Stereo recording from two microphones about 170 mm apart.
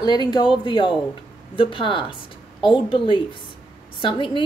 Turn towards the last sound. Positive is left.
turn(degrees=30)  # may be behind; listen again after turning